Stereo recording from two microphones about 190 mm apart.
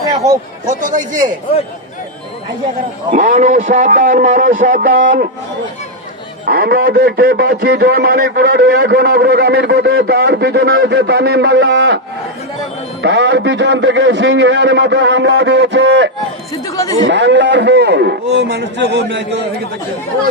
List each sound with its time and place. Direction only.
0.7 s a man's voice: 45° right (ahead or behind)
3.1 s a man's voice: 40° right (ahead or behind)
6.4 s a man's voice: 55° right (ahead or behind)
13.0 s a man's voice: 70° right (ahead or behind)
16.6 s speech: 20° left (ahead or behind)
17.1 s a man's voice: 65° right (ahead or behind)